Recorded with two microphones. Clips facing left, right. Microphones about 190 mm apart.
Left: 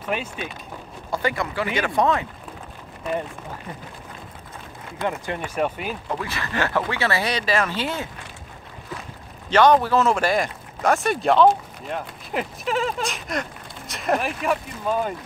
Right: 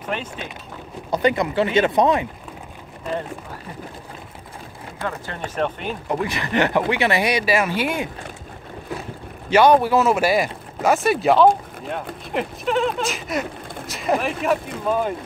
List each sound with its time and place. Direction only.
0.1 s speech: 10° left (ahead or behind)
1.1 s speech: 20° right (ahead or behind)
5.0 s speech: 15° left (ahead or behind)
5.6 s speech: 5° left (ahead or behind)
6.0 s speech: 20° right (ahead or behind)
9.5 s speech: 10° right (ahead or behind)